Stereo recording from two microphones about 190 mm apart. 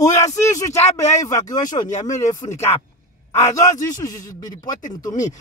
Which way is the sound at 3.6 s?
15° left (ahead or behind).